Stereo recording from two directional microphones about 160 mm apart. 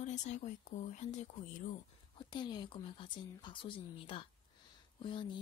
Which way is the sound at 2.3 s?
25° left (ahead or behind).